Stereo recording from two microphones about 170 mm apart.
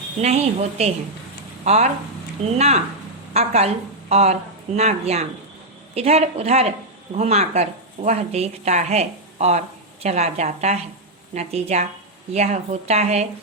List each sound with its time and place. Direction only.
0.2 s a woman's voice: 40° right (ahead or behind)